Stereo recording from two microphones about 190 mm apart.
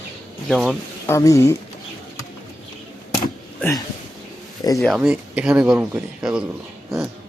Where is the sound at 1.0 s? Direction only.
15° left (ahead or behind).